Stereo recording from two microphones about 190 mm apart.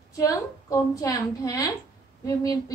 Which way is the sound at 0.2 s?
20° left (ahead or behind).